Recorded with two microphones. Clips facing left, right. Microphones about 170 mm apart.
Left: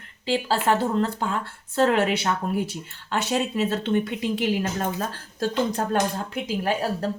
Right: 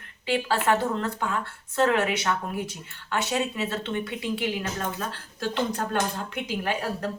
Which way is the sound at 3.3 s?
40° left (ahead or behind).